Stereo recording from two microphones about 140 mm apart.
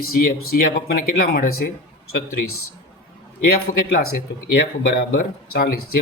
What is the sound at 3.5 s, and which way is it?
Speech, 90° left.